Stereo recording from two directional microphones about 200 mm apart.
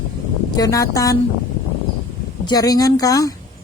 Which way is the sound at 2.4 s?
20° left (ahead or behind).